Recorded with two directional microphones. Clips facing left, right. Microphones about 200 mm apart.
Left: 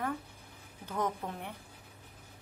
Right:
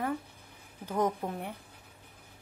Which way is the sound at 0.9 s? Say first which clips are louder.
Right 5 dB; 30° right (ahead or behind).